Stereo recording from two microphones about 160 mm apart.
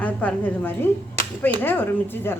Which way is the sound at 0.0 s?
10° left (ahead or behind).